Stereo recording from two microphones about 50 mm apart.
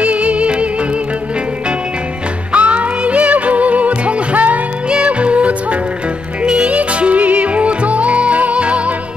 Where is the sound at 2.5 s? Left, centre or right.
Right.